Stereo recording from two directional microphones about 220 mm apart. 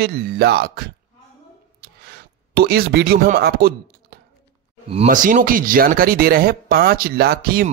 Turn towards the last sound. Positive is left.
turn(degrees=-45)  # may be behind; listen again after turning